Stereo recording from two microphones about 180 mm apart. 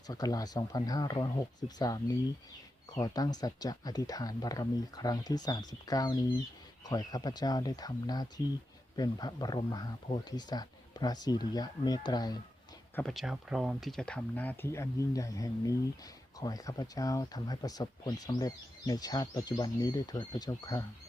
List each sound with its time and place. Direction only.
0.1 s speech: 20° left (ahead or behind)
13.0 s speech: centre (ahead or behind); by 20.8 s 20° left (ahead or behind)